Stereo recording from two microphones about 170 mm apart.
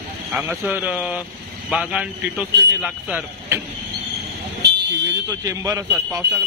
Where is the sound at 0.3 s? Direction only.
10° right (ahead or behind).